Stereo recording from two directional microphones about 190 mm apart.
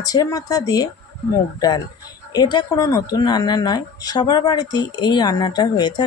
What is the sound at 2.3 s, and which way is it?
Speech, 20° left (ahead or behind).